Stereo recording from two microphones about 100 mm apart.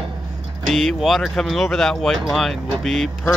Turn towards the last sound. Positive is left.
turn(degrees=0)  # may be behind; listen again after turning